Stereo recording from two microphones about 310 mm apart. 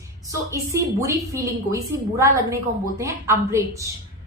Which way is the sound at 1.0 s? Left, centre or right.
Centre.